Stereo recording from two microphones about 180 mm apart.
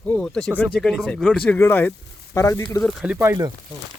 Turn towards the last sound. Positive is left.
turn(degrees=-15)  # may be behind; listen again after turning